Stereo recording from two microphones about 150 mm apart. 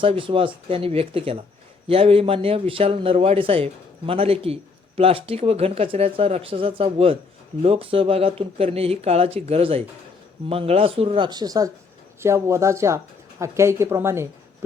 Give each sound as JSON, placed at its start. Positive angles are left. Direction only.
{"t": 0.0, "sound": "a man's voice", "side_deg": -35}